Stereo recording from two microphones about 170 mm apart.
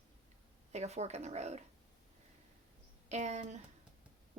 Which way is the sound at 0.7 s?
40° right (ahead or behind).